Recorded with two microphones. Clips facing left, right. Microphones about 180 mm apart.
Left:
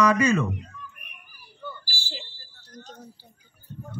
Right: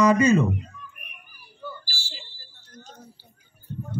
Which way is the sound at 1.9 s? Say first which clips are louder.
Left 4 dB; 55° left (ahead or behind).